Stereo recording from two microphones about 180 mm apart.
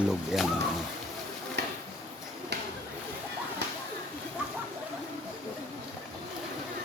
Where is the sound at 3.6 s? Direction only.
70° right (ahead or behind).